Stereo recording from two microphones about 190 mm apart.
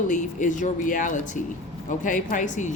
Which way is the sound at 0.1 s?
40° left (ahead or behind).